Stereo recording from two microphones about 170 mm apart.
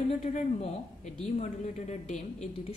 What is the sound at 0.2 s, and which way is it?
Speech, 45° left (ahead or behind).